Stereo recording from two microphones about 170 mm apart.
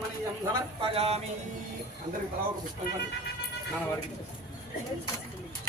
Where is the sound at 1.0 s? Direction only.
35° right (ahead or behind).